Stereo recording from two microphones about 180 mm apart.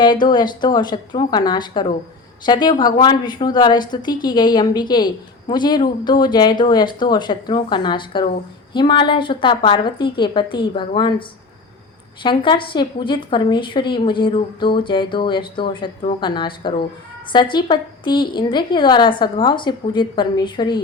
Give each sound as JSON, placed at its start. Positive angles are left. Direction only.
{"t": 0.0, "sound": "a woman's voice", "side_deg": 25}
{"t": 12.2, "sound": "a woman's voice", "side_deg": 25}